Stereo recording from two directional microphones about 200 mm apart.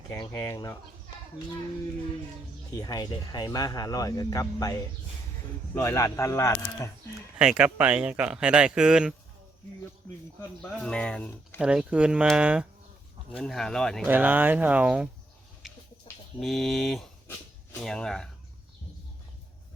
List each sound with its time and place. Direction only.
0.1 s speech: 15° left (ahead or behind)
2.7 s speech: 20° left (ahead or behind)
7.3 s speech: 5° right (ahead or behind)
10.6 s speech: 5° left (ahead or behind)
11.6 s speech: 5° right (ahead or behind)
14.1 s speech: 10° right (ahead or behind)
16.4 s speech: centre (ahead or behind)